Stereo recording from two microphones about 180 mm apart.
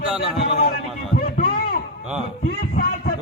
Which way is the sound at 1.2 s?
55° left (ahead or behind).